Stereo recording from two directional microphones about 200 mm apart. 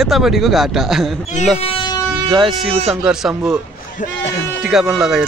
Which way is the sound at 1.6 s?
30° left (ahead or behind).